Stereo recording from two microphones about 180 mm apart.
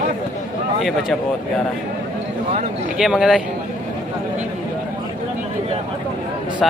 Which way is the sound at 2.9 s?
5° right (ahead or behind).